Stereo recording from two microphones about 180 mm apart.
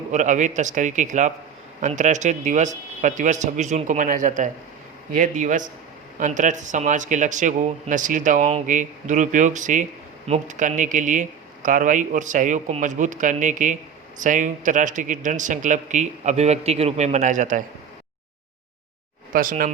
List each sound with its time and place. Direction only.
0.1 s a man's voice: 45° right (ahead or behind)
19.3 s a man's voice: 50° right (ahead or behind)